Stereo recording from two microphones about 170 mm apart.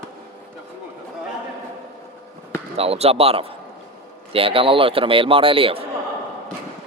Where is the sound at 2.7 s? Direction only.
35° right (ahead or behind).